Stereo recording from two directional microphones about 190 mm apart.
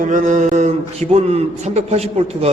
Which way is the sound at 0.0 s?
40° right (ahead or behind).